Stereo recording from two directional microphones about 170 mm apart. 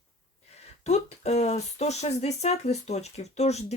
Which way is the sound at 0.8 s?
40° left (ahead or behind).